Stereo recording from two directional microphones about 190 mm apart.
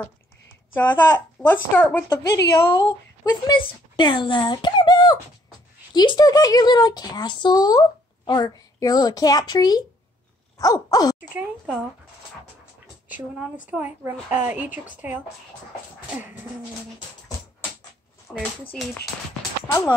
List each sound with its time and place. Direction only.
0.7 s speech: 10° left (ahead or behind)
10.6 s a sound: 20° left (ahead or behind)
11.1 s speech: 10° right (ahead or behind)
13.7 s speech: 10° right (ahead or behind)
18.3 s speech: 5° left (ahead or behind)